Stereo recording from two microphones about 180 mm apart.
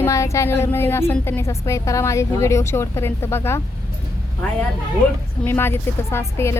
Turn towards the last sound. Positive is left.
turn(degrees=15)  # may be behind; listen again after turning